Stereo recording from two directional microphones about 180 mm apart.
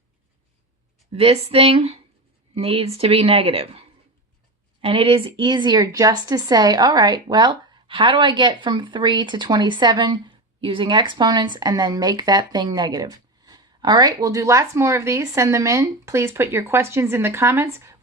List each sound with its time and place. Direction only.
1.1 s a woman's voice: 35° right (ahead or behind); by 17.7 s 15° right (ahead or behind)